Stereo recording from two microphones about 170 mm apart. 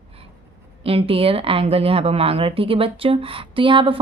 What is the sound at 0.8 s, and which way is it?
Speech, 35° right (ahead or behind).